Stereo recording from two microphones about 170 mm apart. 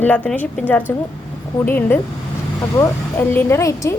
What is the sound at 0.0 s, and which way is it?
Speech, 10° left (ahead or behind).